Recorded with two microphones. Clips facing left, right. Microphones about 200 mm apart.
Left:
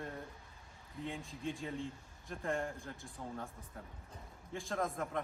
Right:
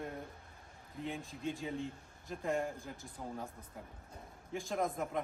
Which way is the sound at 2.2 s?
Centre (ahead or behind).